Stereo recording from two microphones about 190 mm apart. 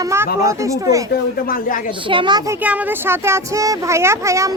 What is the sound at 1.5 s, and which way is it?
Speech, 45° left (ahead or behind).